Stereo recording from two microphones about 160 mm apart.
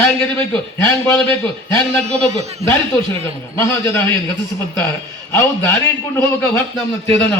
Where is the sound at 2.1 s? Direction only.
40° right (ahead or behind).